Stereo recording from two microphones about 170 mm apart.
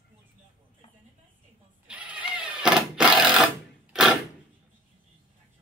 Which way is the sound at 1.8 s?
10° right (ahead or behind).